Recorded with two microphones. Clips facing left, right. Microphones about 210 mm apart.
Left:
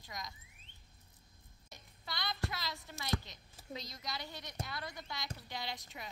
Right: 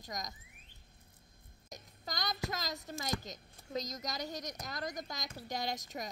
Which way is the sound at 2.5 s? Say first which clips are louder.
Right 4 dB; 40° right (ahead or behind).